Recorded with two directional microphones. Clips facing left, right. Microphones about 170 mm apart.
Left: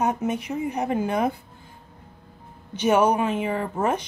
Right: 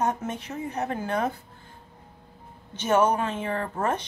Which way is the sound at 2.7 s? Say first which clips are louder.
Left 3 dB; 10° left (ahead or behind).